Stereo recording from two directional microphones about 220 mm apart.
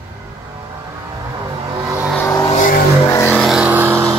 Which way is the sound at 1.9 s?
10° right (ahead or behind).